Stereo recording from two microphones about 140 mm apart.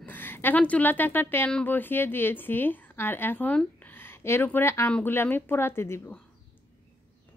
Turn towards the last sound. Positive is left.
turn(degrees=20)  # may be behind; listen again after turning